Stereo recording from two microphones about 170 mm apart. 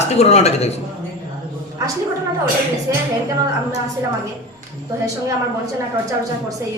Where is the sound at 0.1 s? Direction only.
40° left (ahead or behind).